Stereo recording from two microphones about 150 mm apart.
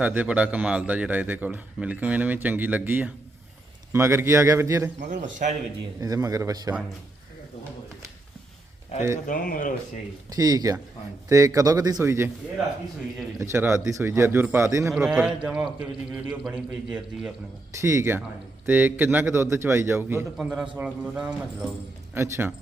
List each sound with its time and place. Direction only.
0.0 s a man's voice: 10° right (ahead or behind)
4.9 s a man's voice: 55° right (ahead or behind)
6.0 s a man's voice: 25° right (ahead or behind)
9.2 s speech: 65° left (ahead or behind)
10.2 s a man's voice: 25° right (ahead or behind)
13.4 s a man's voice: 15° right (ahead or behind)
14.9 s a man's voice: 5° right (ahead or behind)
17.7 s a man's voice: 20° right (ahead or behind)
20.3 s a man's voice: centre (ahead or behind)